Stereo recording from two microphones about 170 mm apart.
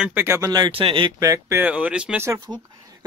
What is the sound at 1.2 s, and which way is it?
Speech, 20° right (ahead or behind).